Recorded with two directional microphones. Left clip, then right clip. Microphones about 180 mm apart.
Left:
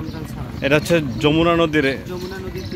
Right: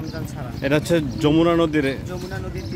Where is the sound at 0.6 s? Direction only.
5° right (ahead or behind).